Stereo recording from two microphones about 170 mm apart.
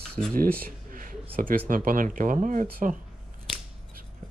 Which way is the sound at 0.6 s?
50° right (ahead or behind).